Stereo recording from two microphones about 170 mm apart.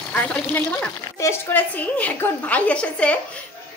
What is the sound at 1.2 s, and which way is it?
A woman's voice, 15° left (ahead or behind).